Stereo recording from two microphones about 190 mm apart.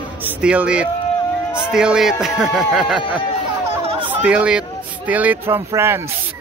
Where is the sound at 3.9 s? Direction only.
25° right (ahead or behind).